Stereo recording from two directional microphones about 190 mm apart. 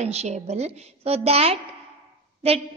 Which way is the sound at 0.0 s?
35° right (ahead or behind).